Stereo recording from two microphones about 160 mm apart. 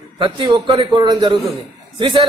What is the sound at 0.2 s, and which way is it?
A man's voice, 30° right (ahead or behind).